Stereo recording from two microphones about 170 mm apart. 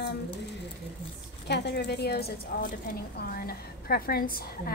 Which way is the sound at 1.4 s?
80° left.